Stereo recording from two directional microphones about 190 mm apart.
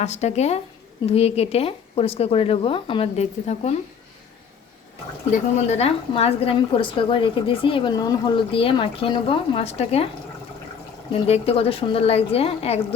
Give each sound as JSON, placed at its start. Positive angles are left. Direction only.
{"t": 0.0, "sound": "a woman's voice", "side_deg": 35}
{"t": 5.3, "sound": "a woman's voice", "side_deg": 35}
{"t": 11.1, "sound": "a woman's voice", "side_deg": 30}